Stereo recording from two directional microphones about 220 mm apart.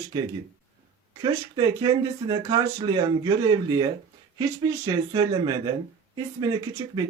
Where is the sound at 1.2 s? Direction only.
20° right (ahead or behind).